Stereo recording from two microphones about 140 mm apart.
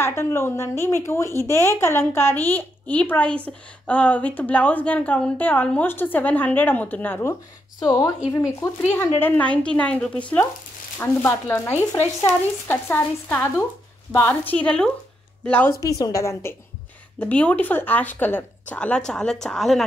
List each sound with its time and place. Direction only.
0.0 s a woman's voice: 20° left (ahead or behind)
7.8 s a woman's voice: 30° left (ahead or behind)
9.2 s a woman's voice: 10° left (ahead or behind)
15.8 s a woman's voice: 25° left (ahead or behind)
17.2 s a woman's voice: 10° left (ahead or behind)